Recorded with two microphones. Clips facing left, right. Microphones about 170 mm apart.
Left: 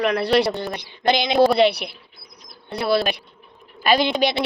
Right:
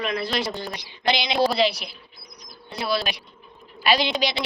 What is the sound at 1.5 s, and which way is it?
A woman's voice, 60° left (ahead or behind).